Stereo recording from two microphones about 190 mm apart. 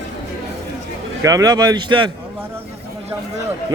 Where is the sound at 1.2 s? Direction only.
20° right (ahead or behind).